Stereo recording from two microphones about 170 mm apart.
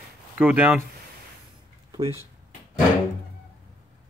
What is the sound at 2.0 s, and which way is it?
Speech, 30° right (ahead or behind).